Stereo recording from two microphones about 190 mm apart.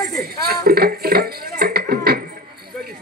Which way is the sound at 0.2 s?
55° right (ahead or behind).